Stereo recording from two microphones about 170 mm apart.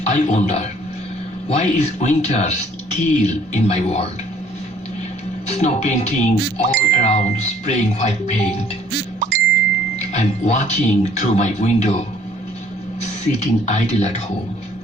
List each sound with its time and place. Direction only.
0.0 s speech: 45° left (ahead or behind)
5.5 s speech: 40° left (ahead or behind)
10.1 s speech: 40° left (ahead or behind)
13.0 s speech: 45° left (ahead or behind)